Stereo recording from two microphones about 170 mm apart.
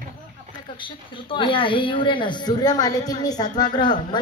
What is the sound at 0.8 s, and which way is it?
Speech, 30° left (ahead or behind).